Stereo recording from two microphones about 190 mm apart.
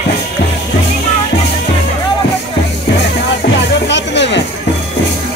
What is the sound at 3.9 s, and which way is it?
Music, 65° left (ahead or behind).